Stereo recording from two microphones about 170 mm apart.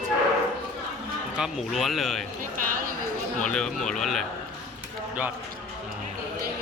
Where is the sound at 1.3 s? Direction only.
5° right (ahead or behind).